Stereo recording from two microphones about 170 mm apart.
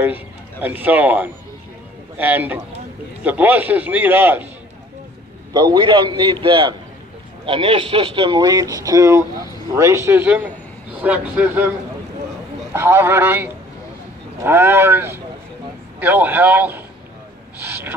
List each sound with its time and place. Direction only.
0.0 s a man's voice: 10° right (ahead or behind)
5.5 s a man's voice: 25° right (ahead or behind)
12.7 s a man's voice: 15° right (ahead or behind)